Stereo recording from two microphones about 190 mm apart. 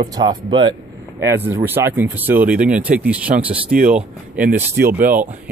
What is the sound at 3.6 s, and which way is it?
Speech, 45° right (ahead or behind).